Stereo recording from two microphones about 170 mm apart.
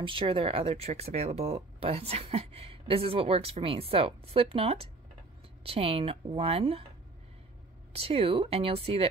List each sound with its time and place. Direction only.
0.0 s speech: 30° right (ahead or behind)
7.9 s speech: 35° right (ahead or behind)